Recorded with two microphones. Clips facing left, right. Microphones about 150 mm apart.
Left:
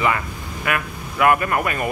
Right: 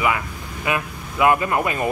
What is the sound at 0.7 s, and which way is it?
Speech, 20° right (ahead or behind).